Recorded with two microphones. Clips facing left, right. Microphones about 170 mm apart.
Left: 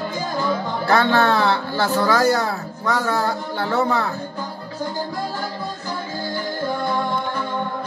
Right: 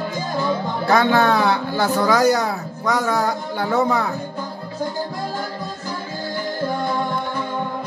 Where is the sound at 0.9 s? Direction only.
15° right (ahead or behind).